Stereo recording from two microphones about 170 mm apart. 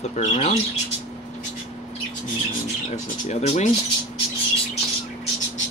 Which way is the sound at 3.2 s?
40° left (ahead or behind).